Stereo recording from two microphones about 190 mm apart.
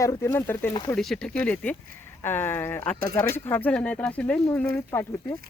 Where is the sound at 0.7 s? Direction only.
25° left (ahead or behind).